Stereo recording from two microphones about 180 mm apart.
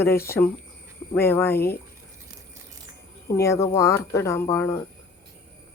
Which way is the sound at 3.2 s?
15° left (ahead or behind).